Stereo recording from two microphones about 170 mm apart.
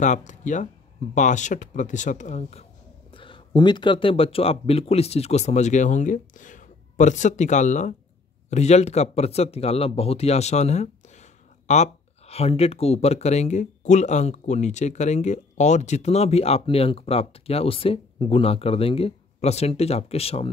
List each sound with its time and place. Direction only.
0.0 s speech: 45° left (ahead or behind)
3.1 s speech: 30° left (ahead or behind)